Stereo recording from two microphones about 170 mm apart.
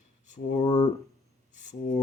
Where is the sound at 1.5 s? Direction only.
45° left (ahead or behind).